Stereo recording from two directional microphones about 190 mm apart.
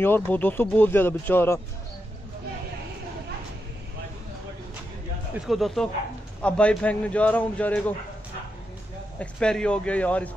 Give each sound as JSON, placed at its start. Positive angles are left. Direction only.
{"t": 0.0, "sound": "speech", "side_deg": 10}
{"t": 5.3, "sound": "speech", "side_deg": 0}
{"t": 9.2, "sound": "speech", "side_deg": 5}